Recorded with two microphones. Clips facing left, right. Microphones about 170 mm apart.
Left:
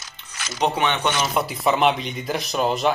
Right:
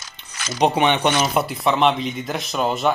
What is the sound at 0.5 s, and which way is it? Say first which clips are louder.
Speech: right 4 dB; 20° right (ahead or behind).